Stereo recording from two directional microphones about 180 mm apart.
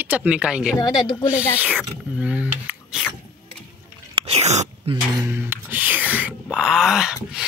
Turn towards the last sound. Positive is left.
turn(degrees=-5)  # may be behind; listen again after turning